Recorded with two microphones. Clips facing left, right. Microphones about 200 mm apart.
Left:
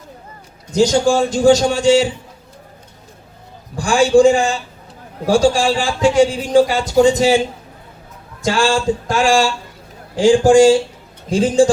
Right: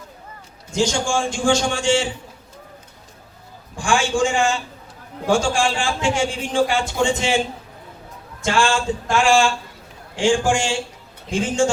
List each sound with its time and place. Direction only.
0.7 s a man's voice: 40° left (ahead or behind)
3.8 s a man's voice: 35° left (ahead or behind)
8.4 s a man's voice: 35° left (ahead or behind)